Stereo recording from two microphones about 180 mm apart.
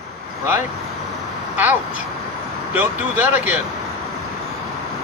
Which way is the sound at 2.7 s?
10° right (ahead or behind).